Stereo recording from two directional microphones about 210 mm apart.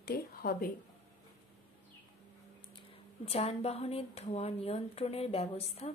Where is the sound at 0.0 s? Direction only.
45° left (ahead or behind).